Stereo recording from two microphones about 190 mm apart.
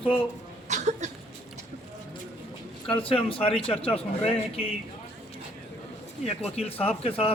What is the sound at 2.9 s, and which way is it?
A man's voice, 30° left (ahead or behind).